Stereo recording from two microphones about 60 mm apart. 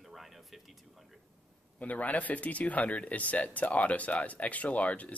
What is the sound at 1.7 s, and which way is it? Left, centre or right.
Speech, left.